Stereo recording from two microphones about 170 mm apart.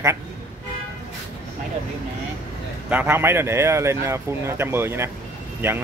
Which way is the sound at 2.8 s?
10° right (ahead or behind).